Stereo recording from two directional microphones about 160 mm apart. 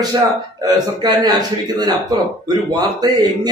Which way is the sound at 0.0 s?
25° right (ahead or behind).